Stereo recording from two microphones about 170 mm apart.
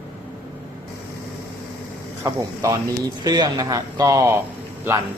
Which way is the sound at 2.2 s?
20° right (ahead or behind).